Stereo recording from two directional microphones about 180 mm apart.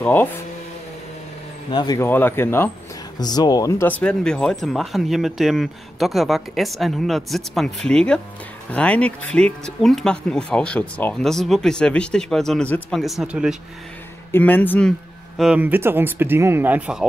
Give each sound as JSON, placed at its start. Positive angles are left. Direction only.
{"t": 0.0, "sound": "speech", "side_deg": 10}
{"t": 1.7, "sound": "speech", "side_deg": 25}
{"t": 2.0, "sound": "speech", "side_deg": 10}
{"t": 14.3, "sound": "speech", "side_deg": 10}